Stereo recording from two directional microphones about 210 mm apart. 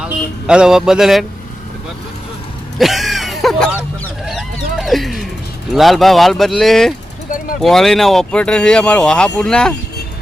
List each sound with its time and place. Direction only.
0.0 s speech: 5° right (ahead or behind)
2.7 s a sound: centre (ahead or behind)
5.7 s speech: centre (ahead or behind)